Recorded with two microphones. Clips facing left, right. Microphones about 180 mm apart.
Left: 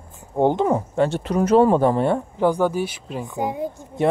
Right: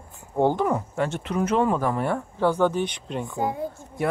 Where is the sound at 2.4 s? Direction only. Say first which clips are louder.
Left 1 dB; 10° left (ahead or behind).